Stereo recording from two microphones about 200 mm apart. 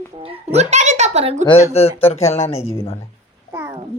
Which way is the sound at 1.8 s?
30° left (ahead or behind).